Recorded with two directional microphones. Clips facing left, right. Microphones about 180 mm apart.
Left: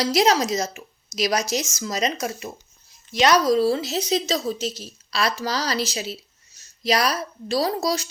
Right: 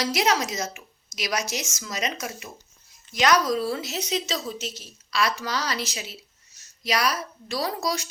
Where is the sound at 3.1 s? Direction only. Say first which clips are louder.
Left 4 dB; 30° left (ahead or behind).